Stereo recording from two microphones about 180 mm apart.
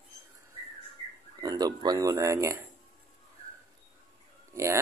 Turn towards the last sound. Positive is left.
turn(degrees=-15)  # may be behind; listen again after turning